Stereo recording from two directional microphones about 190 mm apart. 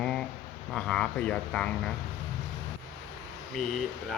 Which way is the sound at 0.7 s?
5° left (ahead or behind).